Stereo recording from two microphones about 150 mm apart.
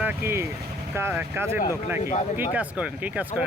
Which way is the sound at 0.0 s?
10° right (ahead or behind).